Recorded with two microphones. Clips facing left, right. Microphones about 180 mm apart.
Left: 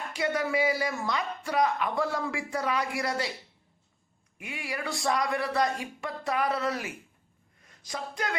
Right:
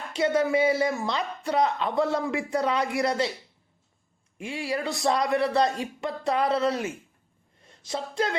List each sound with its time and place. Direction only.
0.1 s speech: 25° right (ahead or behind)
4.4 s speech: 25° right (ahead or behind)